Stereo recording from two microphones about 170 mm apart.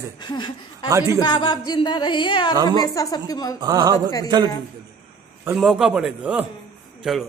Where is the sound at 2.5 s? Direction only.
25° right (ahead or behind).